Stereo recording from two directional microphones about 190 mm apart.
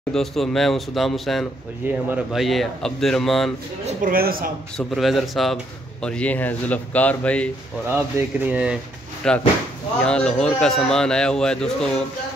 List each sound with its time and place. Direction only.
0.1 s speech: centre (ahead or behind)
3.8 s a man's voice: 45° right (ahead or behind)
4.7 s speech: centre (ahead or behind)
7.9 s speech: 10° right (ahead or behind)
9.2 s speech: 5° left (ahead or behind)